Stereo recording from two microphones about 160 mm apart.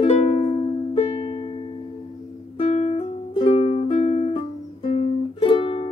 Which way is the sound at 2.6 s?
40° left (ahead or behind).